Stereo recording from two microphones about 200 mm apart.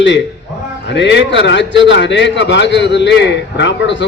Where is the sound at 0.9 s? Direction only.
65° left (ahead or behind).